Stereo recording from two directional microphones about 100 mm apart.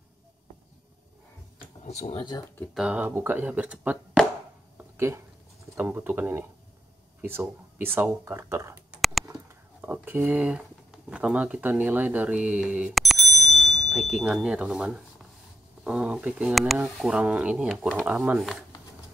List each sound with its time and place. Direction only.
1.9 s speech: 90° left
2.7 s speech: 5° right (ahead or behind)
3.0 s speech: 20° right (ahead or behind)
4.9 s speech: 25° right (ahead or behind)
9.8 s speech: 20° right (ahead or behind)
12.9 s bicycle bell: centre (ahead or behind)
15.8 s speech: 10° right (ahead or behind)